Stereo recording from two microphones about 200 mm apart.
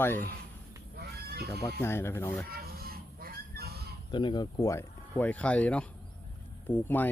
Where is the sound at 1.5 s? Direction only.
10° left (ahead or behind).